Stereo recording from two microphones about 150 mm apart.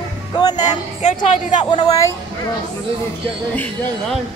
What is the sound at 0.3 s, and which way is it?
Vehicle, 25° left (ahead or behind).